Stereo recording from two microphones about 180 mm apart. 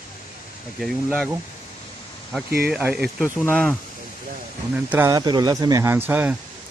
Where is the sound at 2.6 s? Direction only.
10° right (ahead or behind).